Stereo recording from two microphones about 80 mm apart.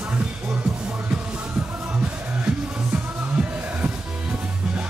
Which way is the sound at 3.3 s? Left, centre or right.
Centre.